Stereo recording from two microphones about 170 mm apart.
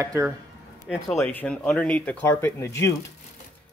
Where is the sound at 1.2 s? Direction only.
10° left (ahead or behind).